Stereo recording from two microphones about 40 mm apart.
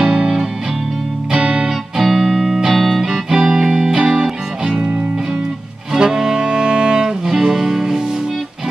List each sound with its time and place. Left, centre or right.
0.0 s music: centre
3.1 s music: centre
5.9 s music: centre